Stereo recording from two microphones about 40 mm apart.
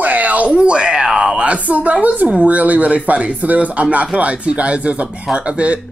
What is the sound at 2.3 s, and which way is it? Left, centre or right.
Speech, right.